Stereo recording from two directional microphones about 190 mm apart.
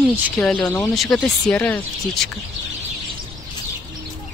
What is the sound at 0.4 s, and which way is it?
Speech, 5° left (ahead or behind).